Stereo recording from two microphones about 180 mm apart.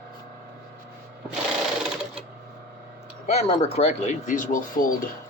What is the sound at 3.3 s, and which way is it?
Speech, 35° left (ahead or behind).